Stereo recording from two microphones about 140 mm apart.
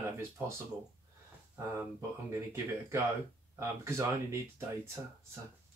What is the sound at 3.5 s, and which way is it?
Speech, 20° right (ahead or behind).